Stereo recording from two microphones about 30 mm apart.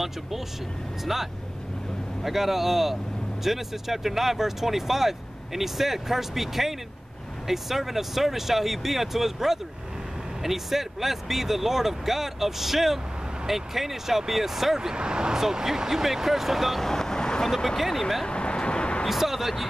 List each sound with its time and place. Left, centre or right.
1.0 s speech: centre
15.0 s speech: right
15.3 s speech: centre
16.8 s vehicle: centre
17.7 s speech: centre
18.2 s vehicle: left
19.0 s speech: centre